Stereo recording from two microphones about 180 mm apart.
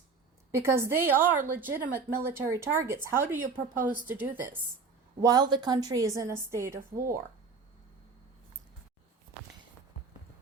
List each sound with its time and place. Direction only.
0.5 s speech: 15° right (ahead or behind)
5.2 s speech: 25° right (ahead or behind)